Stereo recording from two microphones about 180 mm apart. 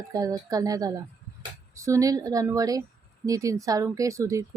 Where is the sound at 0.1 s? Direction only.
20° right (ahead or behind).